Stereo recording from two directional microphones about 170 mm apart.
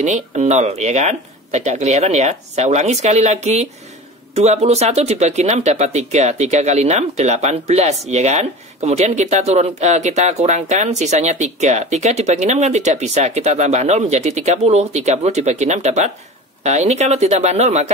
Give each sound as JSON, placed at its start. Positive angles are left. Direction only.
{"t": 0.0, "sound": "speech", "side_deg": -45}